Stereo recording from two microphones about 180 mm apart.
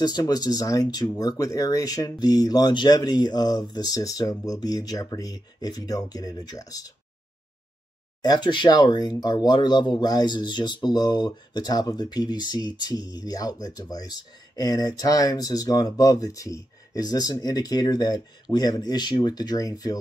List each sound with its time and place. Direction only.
0.0 s speech: 20° left (ahead or behind)
8.2 s speech: 25° left (ahead or behind)